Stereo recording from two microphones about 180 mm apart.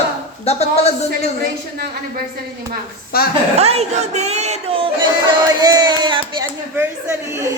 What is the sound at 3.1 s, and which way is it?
Speech, 55° left (ahead or behind).